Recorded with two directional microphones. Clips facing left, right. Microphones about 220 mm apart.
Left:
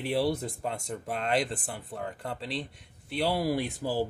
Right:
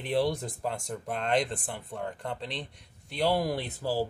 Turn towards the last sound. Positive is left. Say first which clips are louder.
# left 1 dB
turn(degrees=15)  # may be behind; listen again after turning